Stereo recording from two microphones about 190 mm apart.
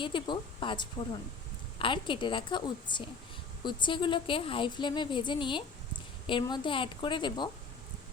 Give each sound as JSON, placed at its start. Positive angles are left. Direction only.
{"t": 0.0, "sound": "a woman's voice", "side_deg": 25}